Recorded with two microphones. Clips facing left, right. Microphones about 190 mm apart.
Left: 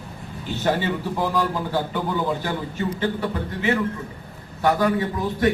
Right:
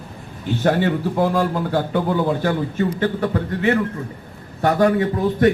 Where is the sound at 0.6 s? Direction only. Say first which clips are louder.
Right 4 dB; 55° right (ahead or behind).